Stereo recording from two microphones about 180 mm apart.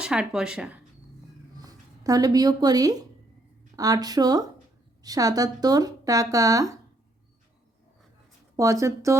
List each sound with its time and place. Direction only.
0.0 s speech: 5° right (ahead or behind)
1.5 s speech: 20° right (ahead or behind)
8.5 s a woman's voice: 20° right (ahead or behind)